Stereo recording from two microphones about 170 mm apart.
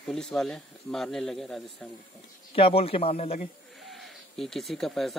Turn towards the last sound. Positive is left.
turn(degrees=0)  # may be behind; listen again after turning